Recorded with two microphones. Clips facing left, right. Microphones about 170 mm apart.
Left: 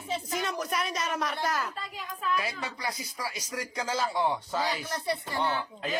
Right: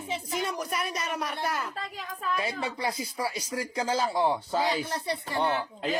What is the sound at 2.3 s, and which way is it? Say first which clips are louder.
Speech: right 3 dB; 30° right (ahead or behind).